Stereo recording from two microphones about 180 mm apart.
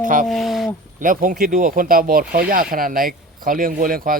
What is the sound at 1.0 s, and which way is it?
Speech, 50° right (ahead or behind).